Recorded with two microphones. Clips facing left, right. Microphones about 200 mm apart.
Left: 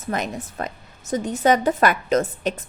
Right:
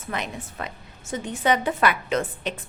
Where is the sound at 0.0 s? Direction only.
40° left (ahead or behind).